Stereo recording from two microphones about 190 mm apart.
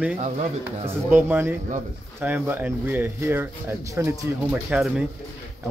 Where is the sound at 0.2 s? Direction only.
35° right (ahead or behind).